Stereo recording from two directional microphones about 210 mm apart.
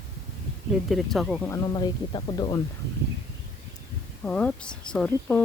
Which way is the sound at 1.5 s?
20° left (ahead or behind).